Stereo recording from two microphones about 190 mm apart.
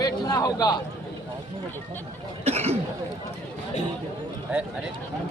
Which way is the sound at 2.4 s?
35° right (ahead or behind).